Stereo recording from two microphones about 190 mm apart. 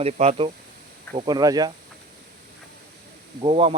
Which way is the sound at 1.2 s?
20° right (ahead or behind).